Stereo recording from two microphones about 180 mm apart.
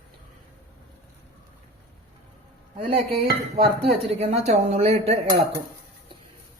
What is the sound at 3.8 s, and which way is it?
Speech, 35° right (ahead or behind).